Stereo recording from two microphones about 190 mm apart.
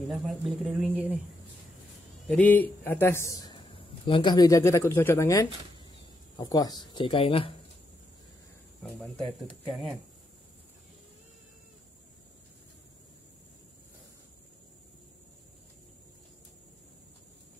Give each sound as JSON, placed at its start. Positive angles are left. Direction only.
{"t": 0.1, "sound": "speech", "side_deg": 0}
{"t": 2.2, "sound": "a man's voice", "side_deg": 10}
{"t": 9.0, "sound": "speech", "side_deg": 0}